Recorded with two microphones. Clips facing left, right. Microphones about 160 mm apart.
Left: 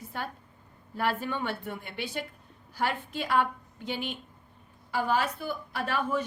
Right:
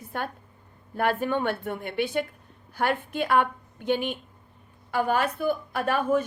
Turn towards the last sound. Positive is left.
turn(degrees=-50)  # may be behind; listen again after turning